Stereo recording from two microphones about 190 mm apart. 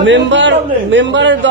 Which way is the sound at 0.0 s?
75° right (ahead or behind).